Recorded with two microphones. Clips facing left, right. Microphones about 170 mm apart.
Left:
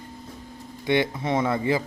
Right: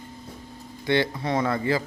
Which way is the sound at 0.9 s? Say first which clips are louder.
Left 1 dB; 20° left (ahead or behind).